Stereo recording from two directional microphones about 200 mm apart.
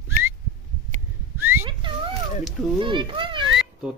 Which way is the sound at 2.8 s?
25° right (ahead or behind).